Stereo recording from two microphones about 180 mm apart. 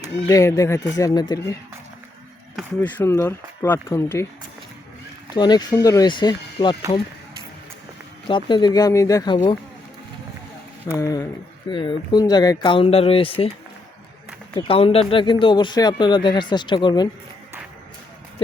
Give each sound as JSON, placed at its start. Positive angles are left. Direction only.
{"t": 0.3, "sound": "speech", "side_deg": 20}
{"t": 2.6, "sound": "speech", "side_deg": 0}
{"t": 3.0, "sound": "speech", "side_deg": 15}
{"t": 5.3, "sound": "speech", "side_deg": 25}
{"t": 8.3, "sound": "speech", "side_deg": 25}
{"t": 10.8, "sound": "speech", "side_deg": 20}
{"t": 14.5, "sound": "speech", "side_deg": 30}